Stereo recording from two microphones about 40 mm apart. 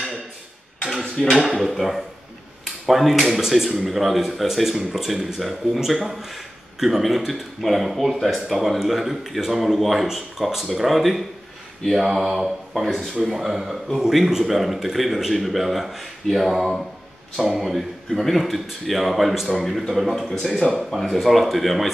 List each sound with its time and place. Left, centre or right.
1.2 s speech: centre
1.5 s speech: centre
21.0 s speech: centre